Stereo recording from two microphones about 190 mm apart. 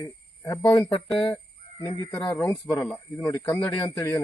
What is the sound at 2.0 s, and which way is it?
Speech, 20° left (ahead or behind).